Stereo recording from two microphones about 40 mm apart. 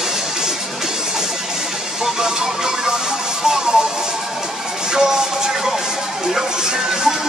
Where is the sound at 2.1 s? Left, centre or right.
Centre.